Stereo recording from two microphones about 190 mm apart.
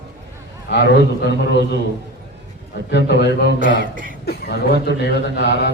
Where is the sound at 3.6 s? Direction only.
45° right (ahead or behind).